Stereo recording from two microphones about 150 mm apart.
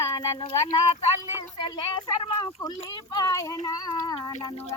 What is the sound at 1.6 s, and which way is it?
A child's voice, 30° left (ahead or behind).